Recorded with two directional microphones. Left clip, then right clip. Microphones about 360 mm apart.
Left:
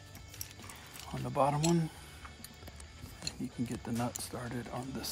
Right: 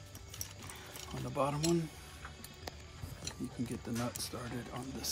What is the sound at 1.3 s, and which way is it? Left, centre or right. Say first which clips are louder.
Speech: left 5 dB; left.